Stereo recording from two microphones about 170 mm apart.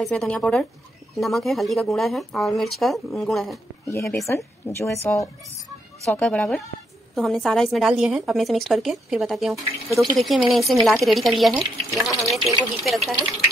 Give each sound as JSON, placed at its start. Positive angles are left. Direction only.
{"t": 0.0, "sound": "speech", "side_deg": 5}
{"t": 3.8, "sound": "a woman's voice", "side_deg": 15}
{"t": 6.0, "sound": "speech", "side_deg": 5}